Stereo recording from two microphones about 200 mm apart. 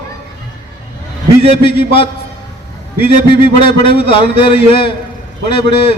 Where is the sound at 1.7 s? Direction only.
25° left (ahead or behind).